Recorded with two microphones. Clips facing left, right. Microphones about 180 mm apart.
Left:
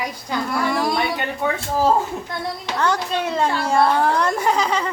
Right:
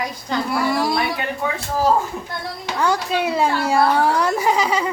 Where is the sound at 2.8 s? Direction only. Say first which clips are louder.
Right 2 dB; 10° right (ahead or behind).